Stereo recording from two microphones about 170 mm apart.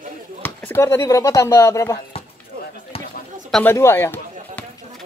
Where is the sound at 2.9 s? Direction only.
35° left (ahead or behind).